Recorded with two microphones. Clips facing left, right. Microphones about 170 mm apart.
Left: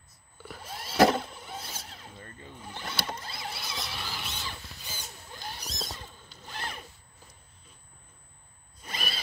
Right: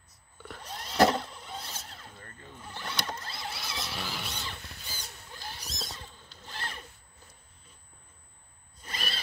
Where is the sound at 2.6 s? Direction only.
10° left (ahead or behind).